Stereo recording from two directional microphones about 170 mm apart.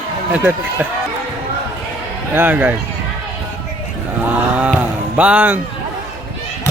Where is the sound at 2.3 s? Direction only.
10° right (ahead or behind).